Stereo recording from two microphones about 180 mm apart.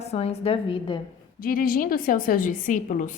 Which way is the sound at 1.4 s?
50° left (ahead or behind).